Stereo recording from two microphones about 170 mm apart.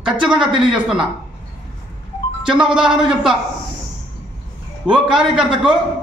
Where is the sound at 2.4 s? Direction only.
5° right (ahead or behind).